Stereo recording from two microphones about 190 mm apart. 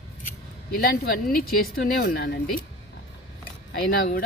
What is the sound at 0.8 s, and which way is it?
Speech, 50° left (ahead or behind).